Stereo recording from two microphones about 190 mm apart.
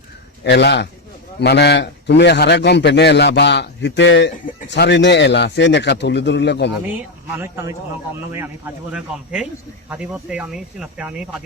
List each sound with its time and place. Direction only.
0.4 s a man's voice: 65° left (ahead or behind)
6.8 s speech: 10° right (ahead or behind)